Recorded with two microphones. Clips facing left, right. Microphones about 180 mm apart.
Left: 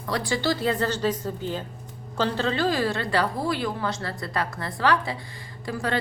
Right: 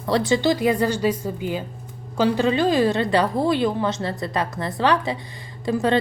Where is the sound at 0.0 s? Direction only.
25° right (ahead or behind).